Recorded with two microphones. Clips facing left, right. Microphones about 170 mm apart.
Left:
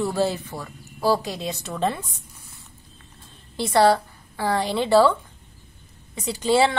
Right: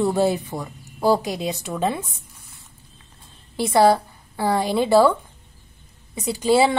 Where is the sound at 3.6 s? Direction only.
10° right (ahead or behind).